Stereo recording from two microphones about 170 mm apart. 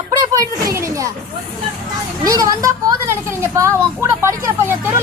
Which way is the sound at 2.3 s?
20° right (ahead or behind).